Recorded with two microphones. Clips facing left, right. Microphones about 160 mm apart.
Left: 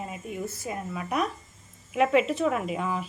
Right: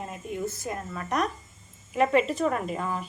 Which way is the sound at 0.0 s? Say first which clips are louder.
Right 1 dB; centre (ahead or behind).